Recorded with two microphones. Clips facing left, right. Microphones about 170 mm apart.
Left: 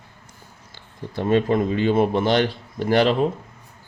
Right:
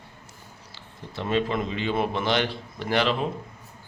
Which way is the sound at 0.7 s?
50° left (ahead or behind).